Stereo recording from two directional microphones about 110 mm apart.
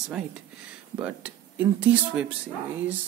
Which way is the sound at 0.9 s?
15° right (ahead or behind).